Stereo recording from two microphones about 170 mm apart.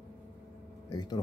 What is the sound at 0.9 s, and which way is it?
Speech, 25° left (ahead or behind).